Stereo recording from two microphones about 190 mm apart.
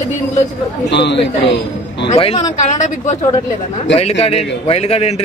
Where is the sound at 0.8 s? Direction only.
65° left (ahead or behind).